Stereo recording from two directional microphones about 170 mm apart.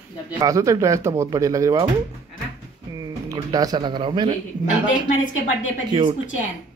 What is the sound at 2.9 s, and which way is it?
Speech, 20° right (ahead or behind).